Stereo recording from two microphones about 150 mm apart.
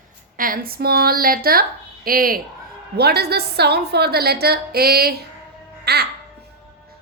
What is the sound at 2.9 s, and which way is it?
A woman's voice, 90° right.